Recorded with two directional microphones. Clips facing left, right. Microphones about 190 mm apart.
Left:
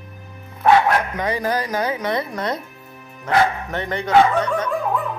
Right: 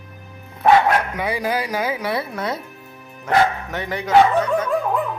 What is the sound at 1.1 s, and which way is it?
A man's voice, 10° right (ahead or behind).